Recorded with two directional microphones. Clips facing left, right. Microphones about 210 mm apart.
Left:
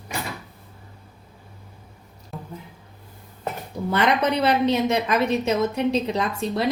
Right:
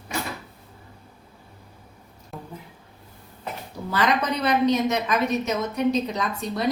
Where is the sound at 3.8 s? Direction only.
25° left (ahead or behind).